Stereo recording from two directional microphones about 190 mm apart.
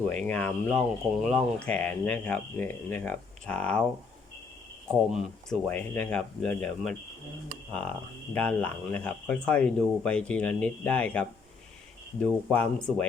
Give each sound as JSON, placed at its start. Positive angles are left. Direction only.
{"t": 0.1, "sound": "speech", "side_deg": 5}
{"t": 4.9, "sound": "speech", "side_deg": 5}